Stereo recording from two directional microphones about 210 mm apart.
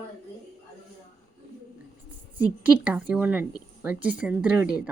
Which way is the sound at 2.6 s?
5° right (ahead or behind).